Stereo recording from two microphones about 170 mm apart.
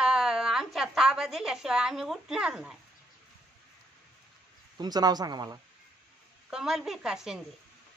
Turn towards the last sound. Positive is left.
turn(degrees=-5)  # may be behind; listen again after turning